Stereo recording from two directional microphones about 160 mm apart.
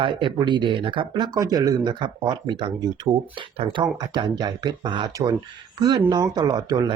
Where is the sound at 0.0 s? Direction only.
30° right (ahead or behind).